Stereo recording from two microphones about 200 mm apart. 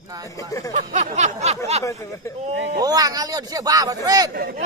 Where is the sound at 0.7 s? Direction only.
35° right (ahead or behind).